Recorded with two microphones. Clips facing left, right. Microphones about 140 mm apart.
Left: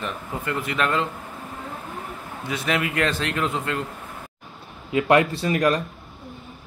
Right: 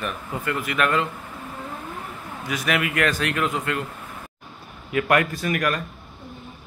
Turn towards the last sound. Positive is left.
turn(degrees=30)  # may be behind; listen again after turning